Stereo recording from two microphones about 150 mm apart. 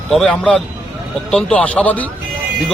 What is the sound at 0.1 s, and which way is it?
Speech, 5° left (ahead or behind).